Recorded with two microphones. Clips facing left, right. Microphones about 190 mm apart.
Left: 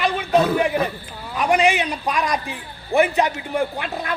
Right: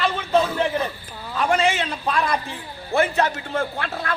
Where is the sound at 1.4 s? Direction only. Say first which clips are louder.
Left 2 dB; 15° left (ahead or behind).